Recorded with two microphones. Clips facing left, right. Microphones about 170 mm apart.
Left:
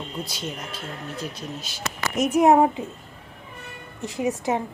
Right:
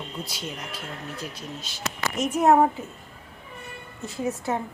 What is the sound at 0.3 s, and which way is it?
Speech, 10° right (ahead or behind).